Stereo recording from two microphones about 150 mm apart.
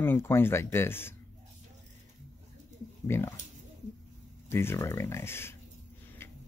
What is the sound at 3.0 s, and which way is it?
Speech, 15° left (ahead or behind).